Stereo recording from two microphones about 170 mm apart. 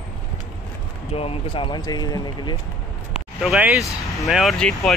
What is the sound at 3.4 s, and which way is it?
Speech, centre (ahead or behind).